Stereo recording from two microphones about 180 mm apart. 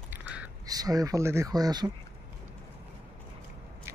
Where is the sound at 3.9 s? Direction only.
15° right (ahead or behind).